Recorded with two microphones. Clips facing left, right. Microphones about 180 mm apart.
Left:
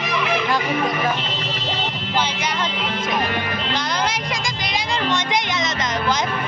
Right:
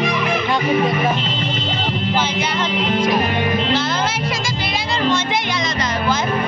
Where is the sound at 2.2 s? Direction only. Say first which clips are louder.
Right 3 dB; 10° left (ahead or behind).